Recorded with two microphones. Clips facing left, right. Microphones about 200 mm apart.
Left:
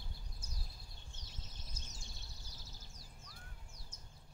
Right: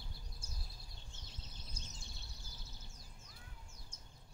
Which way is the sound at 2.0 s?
60° right (ahead or behind).